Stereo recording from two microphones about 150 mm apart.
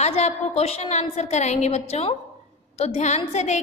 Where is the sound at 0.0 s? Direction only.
45° left (ahead or behind).